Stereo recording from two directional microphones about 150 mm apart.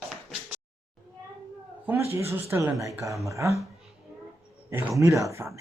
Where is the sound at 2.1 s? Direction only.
20° right (ahead or behind).